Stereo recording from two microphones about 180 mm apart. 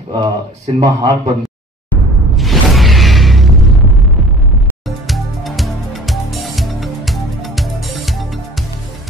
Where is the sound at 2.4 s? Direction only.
Centre (ahead or behind).